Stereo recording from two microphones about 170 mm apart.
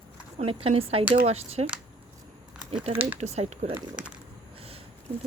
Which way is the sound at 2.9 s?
10° right (ahead or behind).